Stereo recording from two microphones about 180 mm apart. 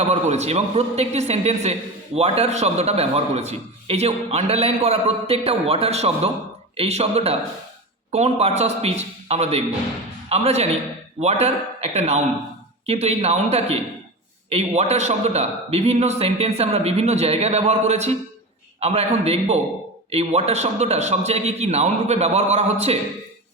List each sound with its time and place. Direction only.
0.1 s a man's voice: 35° right (ahead or behind)